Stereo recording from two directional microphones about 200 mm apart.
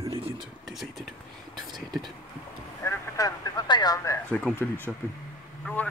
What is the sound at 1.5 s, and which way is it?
Whispering, 20° right (ahead or behind).